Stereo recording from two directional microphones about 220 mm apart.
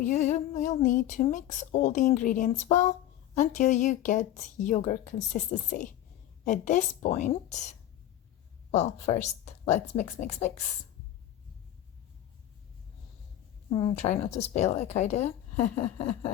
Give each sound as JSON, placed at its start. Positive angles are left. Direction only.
{"t": 0.0, "sound": "speech", "side_deg": 35}
{"t": 8.7, "sound": "speech", "side_deg": 30}
{"t": 13.7, "sound": "speech", "side_deg": 25}